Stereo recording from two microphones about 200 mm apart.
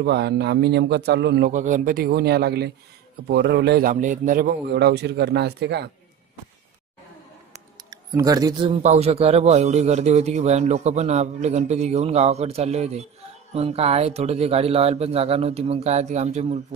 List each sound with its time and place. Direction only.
0.0 s a man's voice: 55° right (ahead or behind)
1.5 s a man's voice: 40° right (ahead or behind)
4.6 s a man's voice: 55° right (ahead or behind)
7.9 s speech: 15° right (ahead or behind)
8.8 s a man's voice: 35° right (ahead or behind)